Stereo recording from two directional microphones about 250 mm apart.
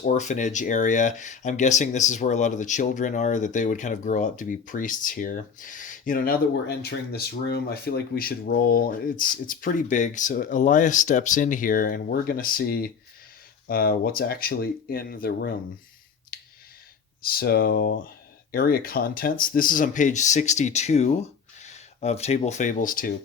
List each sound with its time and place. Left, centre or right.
0.0 s speech: left
16.3 s clicking: left
17.2 s speech: left